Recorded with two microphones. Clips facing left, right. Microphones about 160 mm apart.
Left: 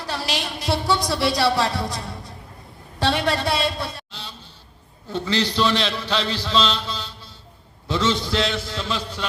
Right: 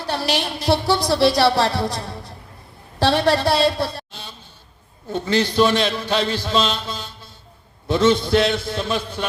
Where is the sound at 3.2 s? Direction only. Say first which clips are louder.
Right 5 dB; 65° right (ahead or behind).